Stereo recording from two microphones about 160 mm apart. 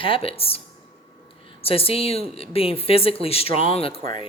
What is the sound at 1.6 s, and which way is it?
Speech, 35° left (ahead or behind).